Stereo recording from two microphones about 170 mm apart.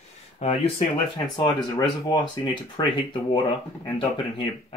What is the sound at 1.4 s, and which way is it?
Speech, 25° left (ahead or behind).